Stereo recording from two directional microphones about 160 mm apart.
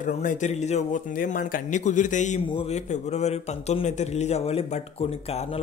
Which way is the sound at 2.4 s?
40° left (ahead or behind).